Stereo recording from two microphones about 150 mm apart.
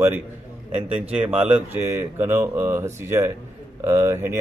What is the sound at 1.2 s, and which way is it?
Speech, 10° right (ahead or behind).